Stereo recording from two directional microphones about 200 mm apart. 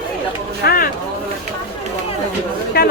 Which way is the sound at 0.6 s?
50° left (ahead or behind).